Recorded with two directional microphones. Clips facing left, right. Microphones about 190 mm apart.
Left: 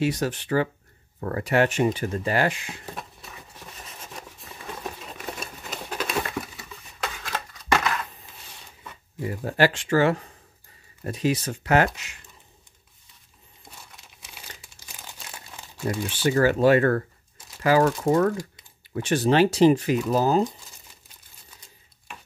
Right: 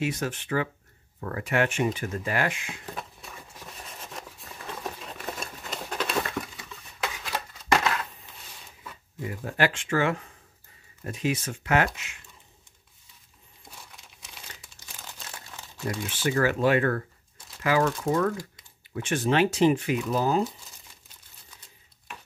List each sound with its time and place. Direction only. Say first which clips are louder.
0.0 s speech: left 4 dB; 35° left (ahead or behind)
2.9 s a sound: right 1 dB; centre (ahead or behind)
9.2 s speech: left 5 dB; 35° left (ahead or behind)
14.6 s crumpling: left 1 dB; 10° left (ahead or behind)
15.9 s speech: left 4 dB; 30° left (ahead or behind)